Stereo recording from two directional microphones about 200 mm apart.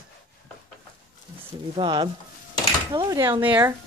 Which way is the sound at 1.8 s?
25° right (ahead or behind).